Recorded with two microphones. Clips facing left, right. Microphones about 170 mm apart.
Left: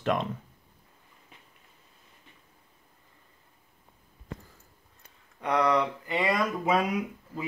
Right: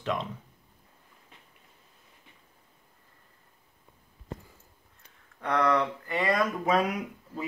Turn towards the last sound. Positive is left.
turn(degrees=10)  # may be behind; listen again after turning